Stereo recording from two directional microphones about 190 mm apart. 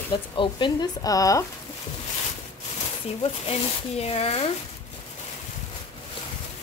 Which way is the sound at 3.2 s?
30° left (ahead or behind).